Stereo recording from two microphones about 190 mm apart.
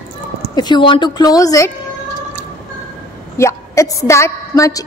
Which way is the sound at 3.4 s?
15° left (ahead or behind).